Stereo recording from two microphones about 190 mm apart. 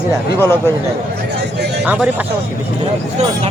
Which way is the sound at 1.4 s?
60° right (ahead or behind).